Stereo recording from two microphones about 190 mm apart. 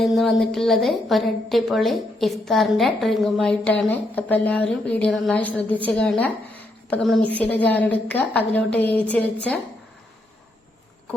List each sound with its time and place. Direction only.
0.0 s a woman's voice: centre (ahead or behind)